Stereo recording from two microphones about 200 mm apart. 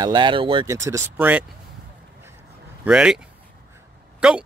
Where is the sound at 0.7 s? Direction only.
15° right (ahead or behind).